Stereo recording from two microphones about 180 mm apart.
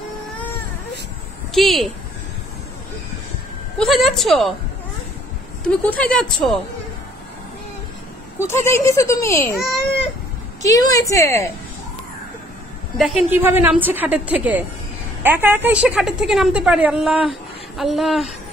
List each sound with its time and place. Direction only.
1.5 s a woman's voice: centre (ahead or behind)
3.7 s a woman's voice: centre (ahead or behind)
5.9 s a woman's voice: 5° left (ahead or behind)
8.4 s speech: 15° left (ahead or behind)
10.6 s speech: 20° left (ahead or behind)
12.9 s a woman's voice: 5° right (ahead or behind)